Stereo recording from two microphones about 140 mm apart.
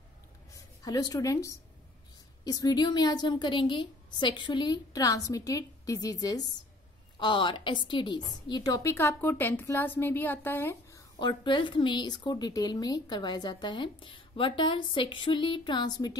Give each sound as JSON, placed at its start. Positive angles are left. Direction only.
{"t": 0.6, "sound": "a woman's voice", "side_deg": 25}
{"t": 11.1, "sound": "a woman's voice", "side_deg": 35}